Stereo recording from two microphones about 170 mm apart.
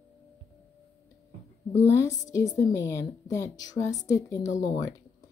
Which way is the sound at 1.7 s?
15° left (ahead or behind).